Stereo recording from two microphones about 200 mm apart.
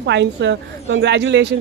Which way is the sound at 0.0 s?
60° right (ahead or behind).